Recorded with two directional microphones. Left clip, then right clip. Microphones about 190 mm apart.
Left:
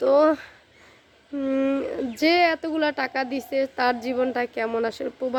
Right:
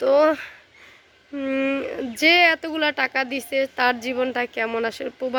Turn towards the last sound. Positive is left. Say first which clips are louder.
# right 1 dB
turn(degrees=0)  # may be behind; listen again after turning